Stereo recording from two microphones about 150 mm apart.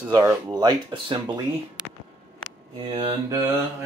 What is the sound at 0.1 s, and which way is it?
Speech, 20° right (ahead or behind).